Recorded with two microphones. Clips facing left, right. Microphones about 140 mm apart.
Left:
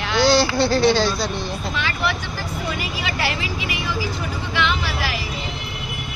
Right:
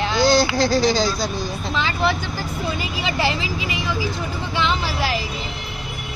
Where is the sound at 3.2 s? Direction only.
25° right (ahead or behind).